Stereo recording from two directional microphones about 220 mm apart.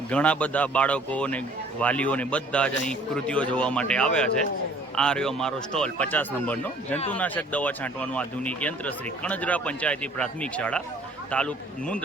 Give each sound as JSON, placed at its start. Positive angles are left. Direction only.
{"t": 0.1, "sound": "a man's voice", "side_deg": 5}